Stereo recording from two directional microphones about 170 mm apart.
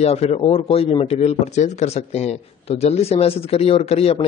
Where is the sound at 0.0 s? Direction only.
35° left (ahead or behind).